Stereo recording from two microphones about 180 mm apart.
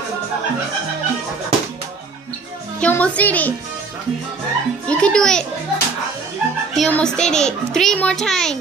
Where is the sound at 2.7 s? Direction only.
10° left (ahead or behind).